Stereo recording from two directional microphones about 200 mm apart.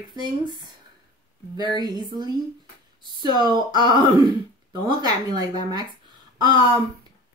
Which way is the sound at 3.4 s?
20° right (ahead or behind).